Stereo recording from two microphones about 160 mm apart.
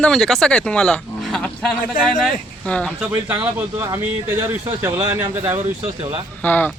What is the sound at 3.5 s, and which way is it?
Speech, 20° right (ahead or behind).